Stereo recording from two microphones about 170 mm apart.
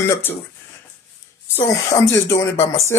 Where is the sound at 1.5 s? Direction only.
15° left (ahead or behind).